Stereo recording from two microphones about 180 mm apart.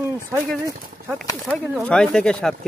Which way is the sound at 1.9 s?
5° left (ahead or behind).